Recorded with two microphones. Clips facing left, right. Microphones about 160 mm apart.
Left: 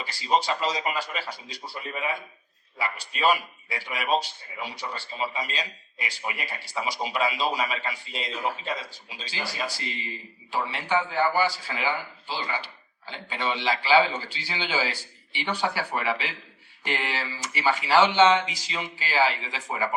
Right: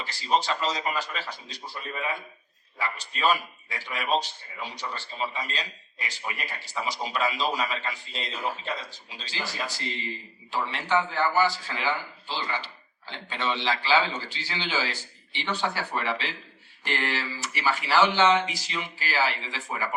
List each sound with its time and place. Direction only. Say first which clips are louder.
0.0 s a man's voice: left 1 dB; 15° left (ahead or behind)